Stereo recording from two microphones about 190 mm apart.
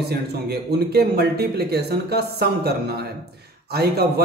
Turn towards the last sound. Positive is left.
turn(degrees=-55)  # may be behind; listen again after turning